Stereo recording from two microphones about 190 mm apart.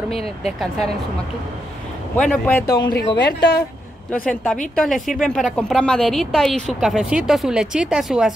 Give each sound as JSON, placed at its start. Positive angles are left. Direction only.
{"t": 0.1, "sound": "speech", "side_deg": 30}
{"t": 0.5, "sound": "a woman's voice", "side_deg": 0}
{"t": 2.1, "sound": "speech", "side_deg": 5}
{"t": 3.2, "sound": "a woman's voice", "side_deg": 65}
{"t": 4.1, "sound": "a woman's voice", "side_deg": 5}